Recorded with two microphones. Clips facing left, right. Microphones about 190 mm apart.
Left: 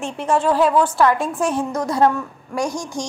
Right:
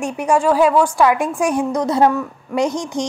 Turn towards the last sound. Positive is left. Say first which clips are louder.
# right 5 dB
turn(degrees=-20)  # may be behind; listen again after turning